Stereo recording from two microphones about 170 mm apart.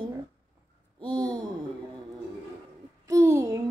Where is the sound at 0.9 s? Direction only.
25° right (ahead or behind).